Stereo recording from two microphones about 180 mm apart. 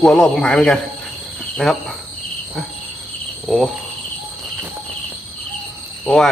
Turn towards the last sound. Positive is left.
turn(degrees=0)  # may be behind; listen again after turning